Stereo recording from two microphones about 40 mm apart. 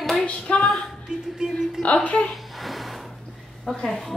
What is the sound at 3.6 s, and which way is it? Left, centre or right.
Speech, centre.